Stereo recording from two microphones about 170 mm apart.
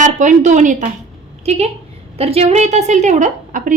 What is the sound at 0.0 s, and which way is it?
A woman's voice, 45° right (ahead or behind).